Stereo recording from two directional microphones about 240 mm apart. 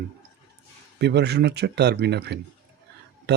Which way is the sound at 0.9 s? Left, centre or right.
Right.